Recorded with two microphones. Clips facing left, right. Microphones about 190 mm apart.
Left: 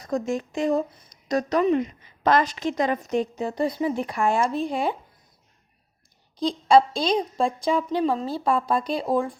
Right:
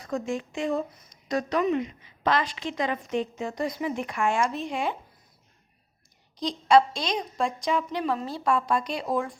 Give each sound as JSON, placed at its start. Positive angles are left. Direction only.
{"t": 0.0, "sound": "speech", "side_deg": 40}
{"t": 6.4, "sound": "speech", "side_deg": 30}